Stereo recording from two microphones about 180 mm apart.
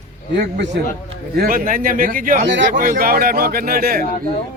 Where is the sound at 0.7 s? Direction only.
70° right (ahead or behind).